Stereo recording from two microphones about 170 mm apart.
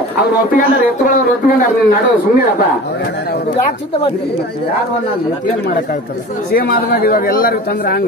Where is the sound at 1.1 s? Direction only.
55° left (ahead or behind).